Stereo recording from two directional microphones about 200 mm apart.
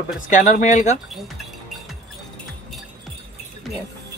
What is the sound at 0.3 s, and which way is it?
Speech, 40° left (ahead or behind).